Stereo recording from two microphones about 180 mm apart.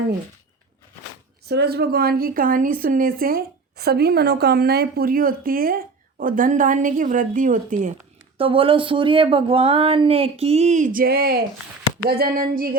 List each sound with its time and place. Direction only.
1.5 s speech: 65° right (ahead or behind); by 7.9 s 45° right (ahead or behind)
8.4 s speech: 30° right (ahead or behind); by 12.7 s 55° right (ahead or behind)